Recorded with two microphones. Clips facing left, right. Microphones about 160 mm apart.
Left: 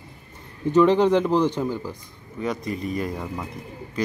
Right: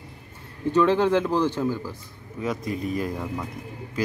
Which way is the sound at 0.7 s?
15° left (ahead or behind).